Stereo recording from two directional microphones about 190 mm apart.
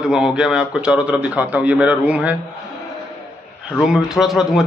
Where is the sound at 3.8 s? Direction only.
5° right (ahead or behind).